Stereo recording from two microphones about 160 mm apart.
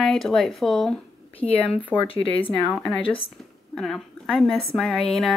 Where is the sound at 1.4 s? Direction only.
35° left (ahead or behind).